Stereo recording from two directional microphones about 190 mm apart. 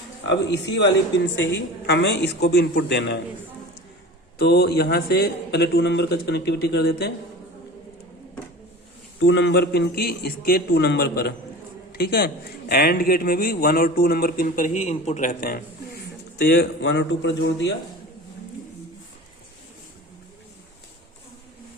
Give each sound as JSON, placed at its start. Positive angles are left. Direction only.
{"t": 0.3, "sound": "a man's voice", "side_deg": 65}
{"t": 1.9, "sound": "a man's voice", "side_deg": 65}
{"t": 4.4, "sound": "a man's voice", "side_deg": 55}
{"t": 9.2, "sound": "a man's voice", "side_deg": 70}